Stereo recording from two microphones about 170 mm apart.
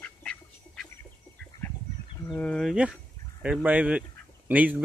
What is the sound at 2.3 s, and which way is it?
Speech, 5° left (ahead or behind).